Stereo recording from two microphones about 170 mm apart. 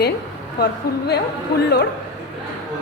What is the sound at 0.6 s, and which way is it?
Speech, 70° left (ahead or behind).